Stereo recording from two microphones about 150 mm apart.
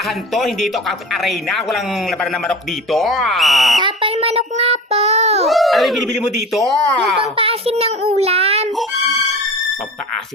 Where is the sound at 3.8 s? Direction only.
40° right (ahead or behind).